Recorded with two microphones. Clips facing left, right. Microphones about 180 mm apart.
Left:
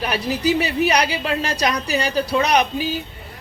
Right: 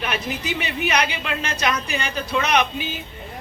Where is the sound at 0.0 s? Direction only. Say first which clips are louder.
Left 6 dB; 35° left (ahead or behind).